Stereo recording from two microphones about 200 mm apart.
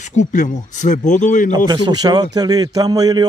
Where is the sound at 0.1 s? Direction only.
40° left (ahead or behind).